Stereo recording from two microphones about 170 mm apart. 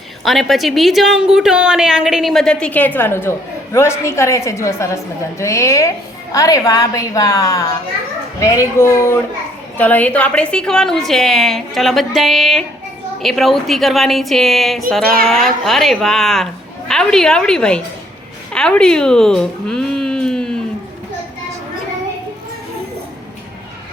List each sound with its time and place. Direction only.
0.3 s a woman's voice: centre (ahead or behind)